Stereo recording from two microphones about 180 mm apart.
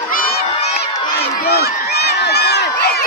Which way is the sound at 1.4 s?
60° left (ahead or behind).